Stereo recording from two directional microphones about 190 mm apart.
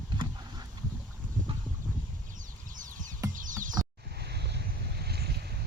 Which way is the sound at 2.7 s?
45° right (ahead or behind).